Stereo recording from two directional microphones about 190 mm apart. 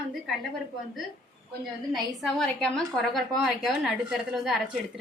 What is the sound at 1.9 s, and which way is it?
A woman's voice, centre (ahead or behind).